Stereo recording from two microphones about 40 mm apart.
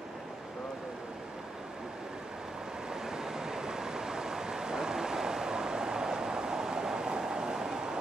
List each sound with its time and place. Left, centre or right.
2.9 s vehicle: centre